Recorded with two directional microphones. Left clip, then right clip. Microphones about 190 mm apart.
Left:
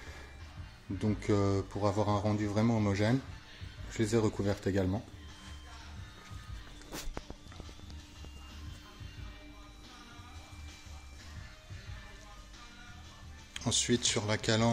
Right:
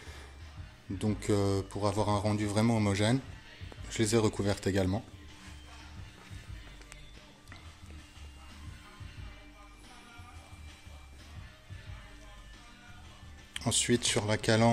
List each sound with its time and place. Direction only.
0.9 s speech: 5° right (ahead or behind)
13.5 s speech: 10° right (ahead or behind)